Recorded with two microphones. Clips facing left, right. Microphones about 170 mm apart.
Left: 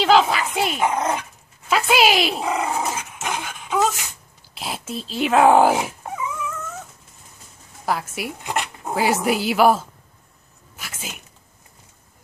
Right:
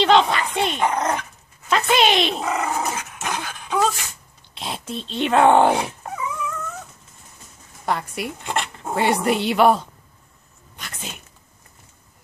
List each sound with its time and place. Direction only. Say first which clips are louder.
0.0 s speech: even; 5° left (ahead or behind)
2.5 s dog: even; 15° left (ahead or behind)
4.6 s speech: even; 5° left (ahead or behind)
7.8 s a woman's voice: even; 5° left (ahead or behind)
10.8 s a sound: even; 5° left (ahead or behind)